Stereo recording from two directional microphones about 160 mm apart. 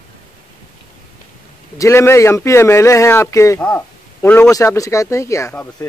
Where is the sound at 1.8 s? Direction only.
15° left (ahead or behind).